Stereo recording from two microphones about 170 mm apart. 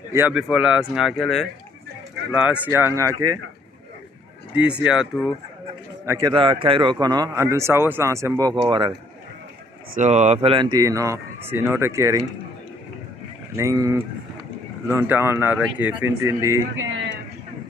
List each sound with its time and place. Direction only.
0.3 s speech: 5° right (ahead or behind); by 3.3 s 20° right (ahead or behind)
4.6 s speech: 5° right (ahead or behind)
6.0 s speech: 20° right (ahead or behind)
9.9 s speech: 45° right (ahead or behind); by 12.3 s 20° right (ahead or behind)
13.6 s speech: 20° right (ahead or behind)